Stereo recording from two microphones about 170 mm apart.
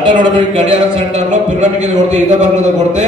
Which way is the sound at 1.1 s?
40° right (ahead or behind).